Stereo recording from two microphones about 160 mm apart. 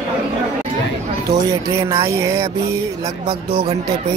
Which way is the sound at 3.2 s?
35° right (ahead or behind).